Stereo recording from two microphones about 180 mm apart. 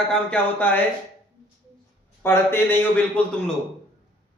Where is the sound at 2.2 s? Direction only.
10° left (ahead or behind).